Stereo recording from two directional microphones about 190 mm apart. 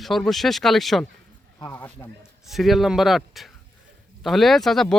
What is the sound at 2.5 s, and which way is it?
Speech, centre (ahead or behind).